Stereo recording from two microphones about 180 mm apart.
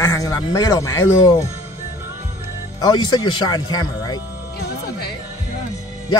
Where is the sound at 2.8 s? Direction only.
25° left (ahead or behind).